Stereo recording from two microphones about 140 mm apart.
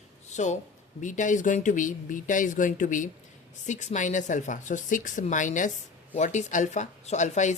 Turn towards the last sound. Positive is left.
turn(degrees=55)  # may be behind; listen again after turning